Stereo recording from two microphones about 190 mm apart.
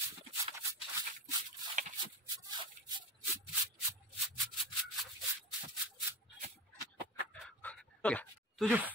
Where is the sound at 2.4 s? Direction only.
20° right (ahead or behind).